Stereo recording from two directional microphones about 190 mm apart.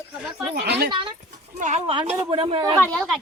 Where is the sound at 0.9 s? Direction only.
25° right (ahead or behind).